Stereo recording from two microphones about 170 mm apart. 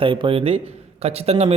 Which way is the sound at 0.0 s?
30° right (ahead or behind).